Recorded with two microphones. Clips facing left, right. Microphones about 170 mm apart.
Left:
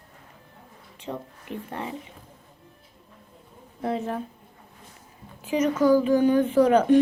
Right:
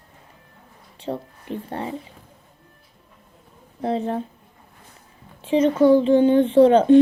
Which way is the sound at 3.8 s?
30° right (ahead or behind).